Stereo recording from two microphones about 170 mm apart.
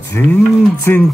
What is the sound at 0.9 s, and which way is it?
Dog, 10° left (ahead or behind).